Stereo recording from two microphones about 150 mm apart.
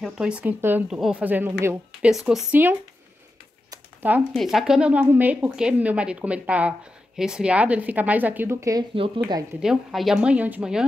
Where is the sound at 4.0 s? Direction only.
10° right (ahead or behind).